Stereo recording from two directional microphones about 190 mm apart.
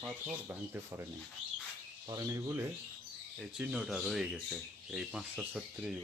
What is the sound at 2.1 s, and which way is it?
Speech, 15° right (ahead or behind).